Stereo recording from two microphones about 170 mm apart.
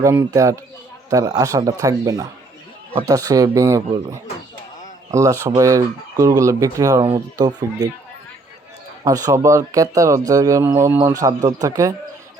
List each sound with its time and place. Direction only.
0.0 s speech: 20° right (ahead or behind)
5.1 s speech: 15° right (ahead or behind)
9.0 s speech: 20° right (ahead or behind)